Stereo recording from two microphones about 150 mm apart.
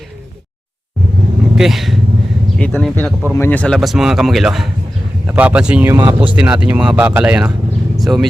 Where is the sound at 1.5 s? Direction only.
Centre (ahead or behind).